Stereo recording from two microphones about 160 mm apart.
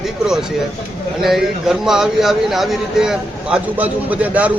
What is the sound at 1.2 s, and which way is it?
A man's voice, centre (ahead or behind).